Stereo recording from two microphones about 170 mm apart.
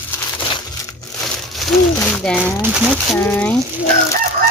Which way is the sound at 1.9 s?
10° left (ahead or behind).